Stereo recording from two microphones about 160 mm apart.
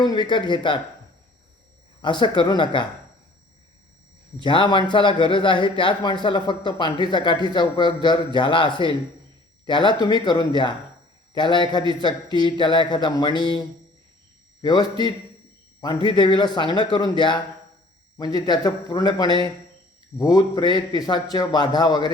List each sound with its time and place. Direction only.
0.0 s a man's voice: 25° left (ahead or behind)
2.0 s a man's voice: 30° left (ahead or behind)
4.4 s a man's voice: 30° left (ahead or behind)